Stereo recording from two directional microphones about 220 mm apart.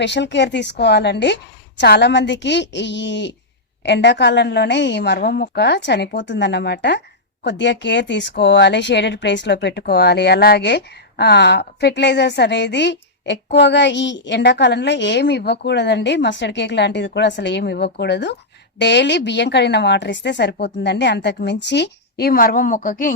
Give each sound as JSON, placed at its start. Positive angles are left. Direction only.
{"t": 0.0, "sound": "speech", "side_deg": 50}